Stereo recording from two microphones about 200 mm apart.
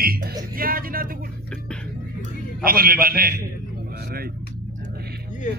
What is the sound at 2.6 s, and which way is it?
Speech, 45° right (ahead or behind).